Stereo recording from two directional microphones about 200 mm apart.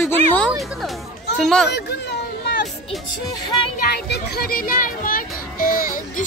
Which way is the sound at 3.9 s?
55° left (ahead or behind).